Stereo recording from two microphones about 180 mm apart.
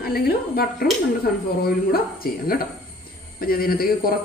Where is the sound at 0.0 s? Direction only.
60° left (ahead or behind).